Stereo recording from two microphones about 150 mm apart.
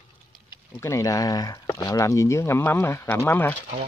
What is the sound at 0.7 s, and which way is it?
Speech, 20° left (ahead or behind).